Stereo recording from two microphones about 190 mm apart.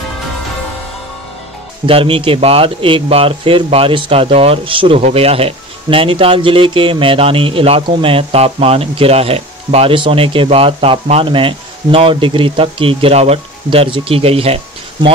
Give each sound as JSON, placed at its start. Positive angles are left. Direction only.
{"t": 1.9, "sound": "speech", "side_deg": -30}